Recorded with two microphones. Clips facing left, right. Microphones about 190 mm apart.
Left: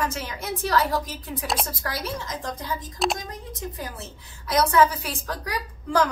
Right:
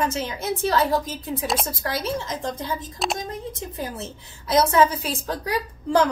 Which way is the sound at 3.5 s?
25° right (ahead or behind).